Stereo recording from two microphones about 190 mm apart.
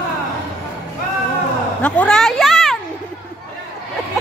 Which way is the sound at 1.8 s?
5° left (ahead or behind).